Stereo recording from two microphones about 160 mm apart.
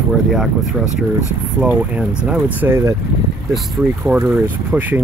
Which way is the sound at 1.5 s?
5° right (ahead or behind).